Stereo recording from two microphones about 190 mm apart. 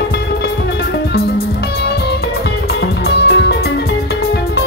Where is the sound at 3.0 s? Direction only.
60° left (ahead or behind).